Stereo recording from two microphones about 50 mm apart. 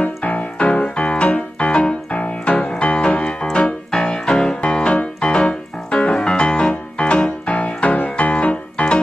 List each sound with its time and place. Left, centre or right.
0.0 s music: left